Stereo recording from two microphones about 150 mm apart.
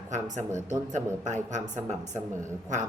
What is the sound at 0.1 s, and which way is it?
A woman's voice, 55° right (ahead or behind).